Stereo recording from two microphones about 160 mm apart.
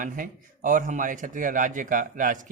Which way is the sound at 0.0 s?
55° right (ahead or behind).